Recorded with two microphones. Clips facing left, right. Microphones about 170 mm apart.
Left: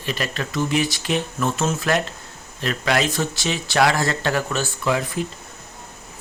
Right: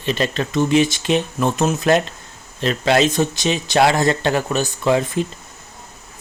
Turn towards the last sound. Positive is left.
turn(degrees=-25)  # may be behind; listen again after turning